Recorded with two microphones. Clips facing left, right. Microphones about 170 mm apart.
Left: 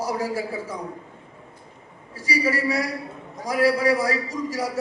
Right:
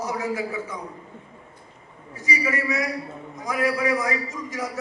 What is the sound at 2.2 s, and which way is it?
A man's voice, 35° left (ahead or behind).